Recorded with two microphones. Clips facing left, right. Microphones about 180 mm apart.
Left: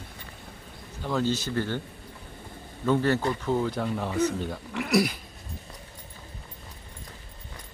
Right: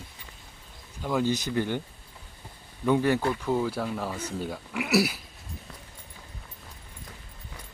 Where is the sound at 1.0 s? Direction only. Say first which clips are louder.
Right 1 dB; 10° right (ahead or behind).